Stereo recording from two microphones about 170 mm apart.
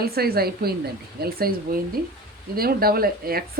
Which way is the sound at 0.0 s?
65° right (ahead or behind).